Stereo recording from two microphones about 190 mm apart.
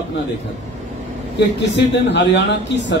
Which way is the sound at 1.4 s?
65° left (ahead or behind).